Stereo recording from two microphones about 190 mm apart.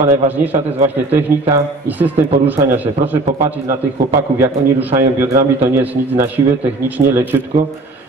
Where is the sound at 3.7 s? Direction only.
15° right (ahead or behind).